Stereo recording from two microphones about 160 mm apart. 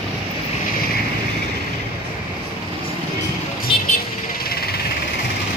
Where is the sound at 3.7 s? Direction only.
35° left (ahead or behind).